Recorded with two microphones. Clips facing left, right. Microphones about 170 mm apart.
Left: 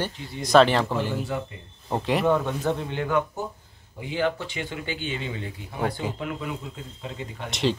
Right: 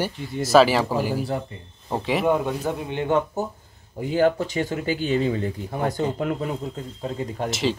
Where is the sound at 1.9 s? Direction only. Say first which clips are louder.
Right 1 dB; centre (ahead or behind).